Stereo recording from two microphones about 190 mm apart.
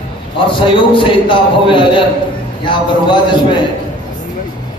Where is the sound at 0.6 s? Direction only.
25° left (ahead or behind).